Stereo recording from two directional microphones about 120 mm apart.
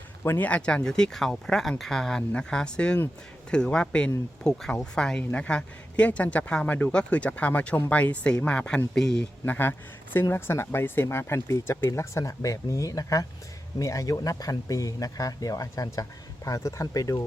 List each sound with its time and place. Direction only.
0.3 s speech: 15° left (ahead or behind); by 17.2 s 30° left (ahead or behind)